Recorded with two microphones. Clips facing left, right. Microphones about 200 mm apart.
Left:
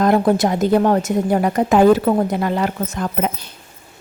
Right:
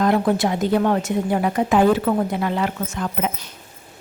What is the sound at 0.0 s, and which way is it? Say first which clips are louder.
A woman's voice: left 3 dB; 40° left (ahead or behind).